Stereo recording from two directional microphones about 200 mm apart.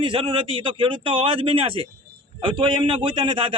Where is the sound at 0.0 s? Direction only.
25° right (ahead or behind).